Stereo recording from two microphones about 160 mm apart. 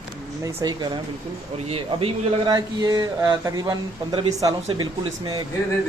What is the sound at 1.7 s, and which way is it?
Speech, 35° right (ahead or behind).